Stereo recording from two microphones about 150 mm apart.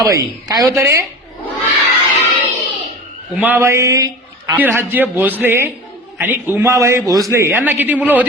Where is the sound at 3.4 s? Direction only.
15° right (ahead or behind).